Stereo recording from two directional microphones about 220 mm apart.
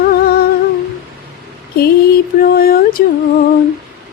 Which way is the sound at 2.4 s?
45° left (ahead or behind).